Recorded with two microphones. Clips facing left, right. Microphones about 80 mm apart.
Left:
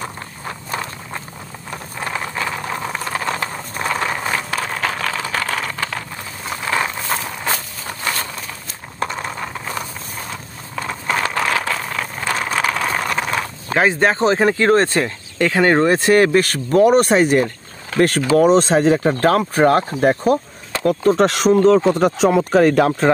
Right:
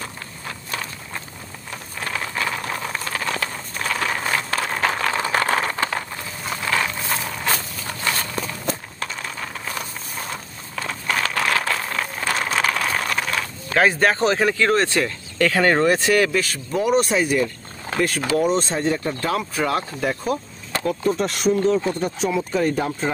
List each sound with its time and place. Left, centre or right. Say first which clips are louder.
0.0 s a sound: left 4 dB; left; by 5.1 s centre
5.1 s a sound: right 2 dB; centre
6.4 s a sound: left 2 dB; centre
9.0 s a sound: left 6 dB; left
11.4 s vehicle: left 2 dB; centre
13.7 s speech: left 2 dB; left
15.0 s speech: left 1 dB; centre
15.9 s speech: left 5 dB; left
16.4 s speech: left 8 dB; left
18.5 s speech: left 8 dB; left
20.8 s speech: left 7 dB; left
22.3 s speech: left 8 dB; left